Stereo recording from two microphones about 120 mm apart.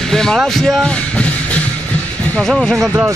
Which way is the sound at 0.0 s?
5° left (ahead or behind).